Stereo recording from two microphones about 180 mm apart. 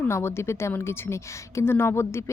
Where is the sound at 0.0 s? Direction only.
15° left (ahead or behind).